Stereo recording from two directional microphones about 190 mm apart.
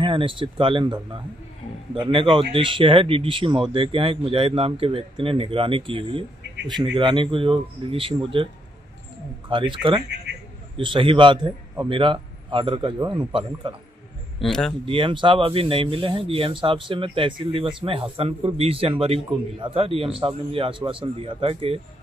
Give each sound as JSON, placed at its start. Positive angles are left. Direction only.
{"t": 0.0, "sound": "a man's voice", "side_deg": -25}
{"t": 9.5, "sound": "a man's voice", "side_deg": -25}
{"t": 14.4, "sound": "speech", "side_deg": 0}
{"t": 14.9, "sound": "a man's voice", "side_deg": -25}